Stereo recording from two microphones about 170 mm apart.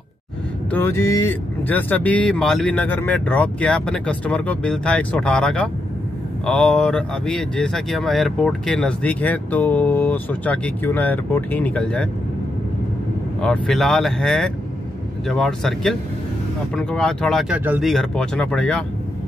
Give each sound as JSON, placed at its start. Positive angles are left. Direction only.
{"t": 0.7, "sound": "speech", "side_deg": 10}
{"t": 13.4, "sound": "speech", "side_deg": 5}